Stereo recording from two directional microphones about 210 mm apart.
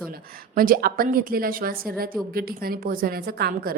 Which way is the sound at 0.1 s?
45° right (ahead or behind).